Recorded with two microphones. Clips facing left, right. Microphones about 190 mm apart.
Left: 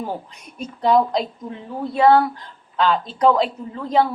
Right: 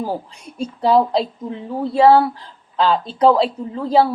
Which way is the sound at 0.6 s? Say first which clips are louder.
Right 2 dB; 30° right (ahead or behind).